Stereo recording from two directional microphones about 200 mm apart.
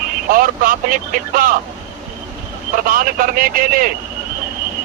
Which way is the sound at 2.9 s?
45° right (ahead or behind).